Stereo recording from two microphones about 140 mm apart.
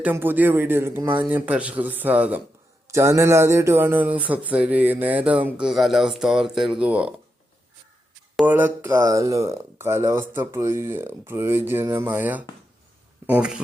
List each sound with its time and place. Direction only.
0.0 s speech: 15° right (ahead or behind)
8.4 s speech: 15° right (ahead or behind)